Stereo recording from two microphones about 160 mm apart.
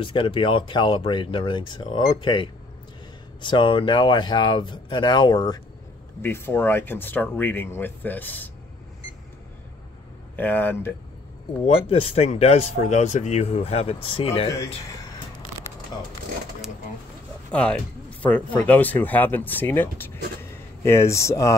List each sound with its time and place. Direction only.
0.0 s speech: 30° left (ahead or behind)
6.2 s speech: 15° left (ahead or behind)
10.3 s speech: 10° left (ahead or behind)
11.6 s speech: 40° left (ahead or behind)
17.5 s speech: 5° left (ahead or behind)